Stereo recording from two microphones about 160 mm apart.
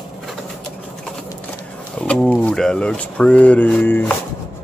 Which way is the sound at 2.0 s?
5° left (ahead or behind).